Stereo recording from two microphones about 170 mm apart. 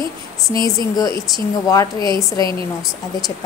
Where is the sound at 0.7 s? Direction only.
20° left (ahead or behind).